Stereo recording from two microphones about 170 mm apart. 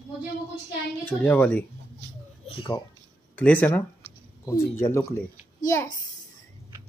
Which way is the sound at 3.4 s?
10° left (ahead or behind).